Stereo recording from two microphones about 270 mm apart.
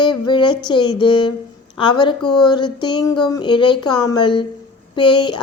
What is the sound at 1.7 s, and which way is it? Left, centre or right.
Speech, centre.